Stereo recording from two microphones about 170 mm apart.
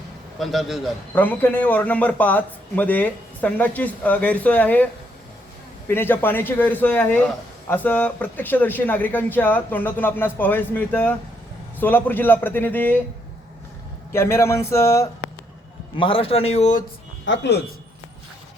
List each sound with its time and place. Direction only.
0.3 s a man's voice: centre (ahead or behind)
1.1 s a man's voice: 10° left (ahead or behind)
5.9 s a man's voice: 10° left (ahead or behind)
14.1 s a man's voice: 15° left (ahead or behind)
16.0 s a man's voice: 30° left (ahead or behind)
17.2 s speech: 90° left